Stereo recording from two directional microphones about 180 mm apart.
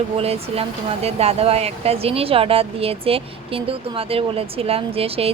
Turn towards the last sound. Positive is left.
turn(degrees=-30)  # may be behind; listen again after turning